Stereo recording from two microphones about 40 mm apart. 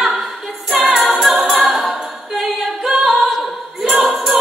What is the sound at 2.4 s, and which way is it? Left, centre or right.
A capella, centre.